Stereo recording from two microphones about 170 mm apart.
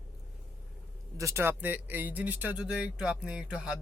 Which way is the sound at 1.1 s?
15° right (ahead or behind).